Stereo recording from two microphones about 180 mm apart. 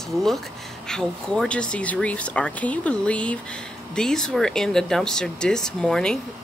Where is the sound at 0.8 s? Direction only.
5° left (ahead or behind).